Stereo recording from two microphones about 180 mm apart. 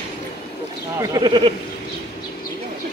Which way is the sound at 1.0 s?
20° right (ahead or behind).